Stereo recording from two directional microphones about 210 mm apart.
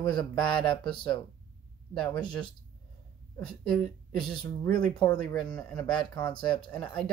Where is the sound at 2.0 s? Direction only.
20° left (ahead or behind).